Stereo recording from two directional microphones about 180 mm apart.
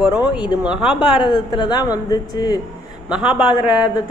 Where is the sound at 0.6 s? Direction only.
5° right (ahead or behind).